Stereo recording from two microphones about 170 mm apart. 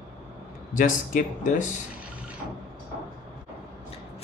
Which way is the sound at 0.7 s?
50° left (ahead or behind).